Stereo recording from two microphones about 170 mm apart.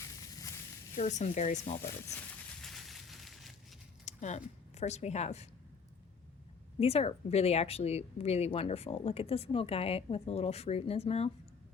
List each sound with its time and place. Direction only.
0.9 s speech: 45° left (ahead or behind)
2.6 s a sound: centre (ahead or behind)
4.0 s speech: 45° left (ahead or behind)
6.7 s a woman's voice: 35° left (ahead or behind)